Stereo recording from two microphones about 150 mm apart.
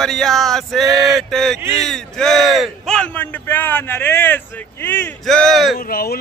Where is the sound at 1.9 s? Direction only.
5° left (ahead or behind).